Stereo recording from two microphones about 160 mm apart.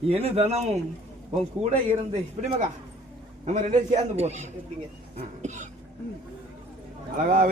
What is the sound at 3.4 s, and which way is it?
A man's voice, 50° right (ahead or behind).